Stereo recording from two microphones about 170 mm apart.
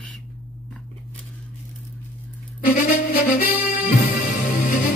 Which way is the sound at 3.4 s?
55° left (ahead or behind).